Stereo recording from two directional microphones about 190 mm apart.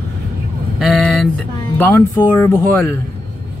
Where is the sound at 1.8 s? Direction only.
10° left (ahead or behind).